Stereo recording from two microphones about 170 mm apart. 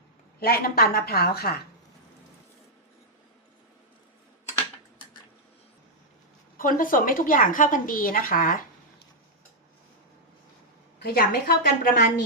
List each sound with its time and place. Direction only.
0.3 s a woman's voice: 65° left (ahead or behind)
6.6 s a woman's voice: 55° left (ahead or behind)
11.0 s a woman's voice: 65° left (ahead or behind)